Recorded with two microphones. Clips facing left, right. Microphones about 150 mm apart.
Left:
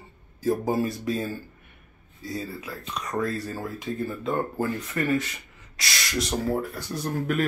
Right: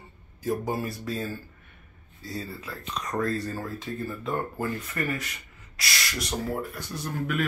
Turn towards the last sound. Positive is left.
turn(degrees=35)  # may be behind; listen again after turning